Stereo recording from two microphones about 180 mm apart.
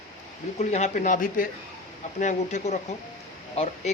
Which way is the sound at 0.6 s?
40° left (ahead or behind).